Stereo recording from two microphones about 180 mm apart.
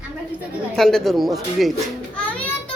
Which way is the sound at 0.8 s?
Centre (ahead or behind).